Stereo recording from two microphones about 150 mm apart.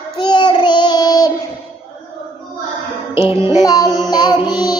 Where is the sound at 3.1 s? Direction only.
40° left (ahead or behind).